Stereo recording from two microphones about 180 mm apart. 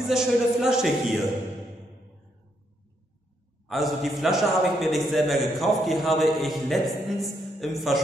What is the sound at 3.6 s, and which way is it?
A man's voice, centre (ahead or behind).